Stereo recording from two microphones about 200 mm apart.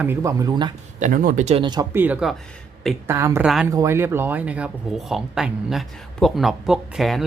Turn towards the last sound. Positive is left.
turn(degrees=0)  # may be behind; listen again after turning